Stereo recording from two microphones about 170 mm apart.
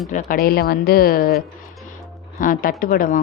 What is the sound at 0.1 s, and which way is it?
Speech, 50° left (ahead or behind).